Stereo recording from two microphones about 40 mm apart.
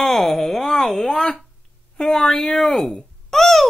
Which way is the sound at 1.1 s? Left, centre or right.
Left.